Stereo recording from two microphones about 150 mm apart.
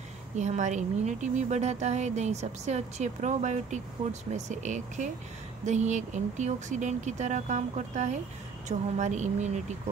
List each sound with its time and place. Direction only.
0.4 s a woman's voice: 50° right (ahead or behind)